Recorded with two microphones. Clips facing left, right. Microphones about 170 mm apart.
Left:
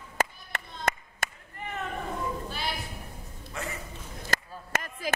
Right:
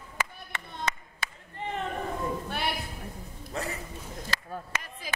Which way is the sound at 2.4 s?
60° right (ahead or behind).